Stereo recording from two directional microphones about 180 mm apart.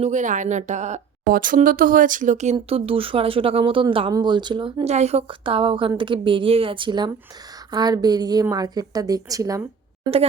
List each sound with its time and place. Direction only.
0.0 s a woman's voice: 45° right (ahead or behind); by 9.6 s 20° right (ahead or behind)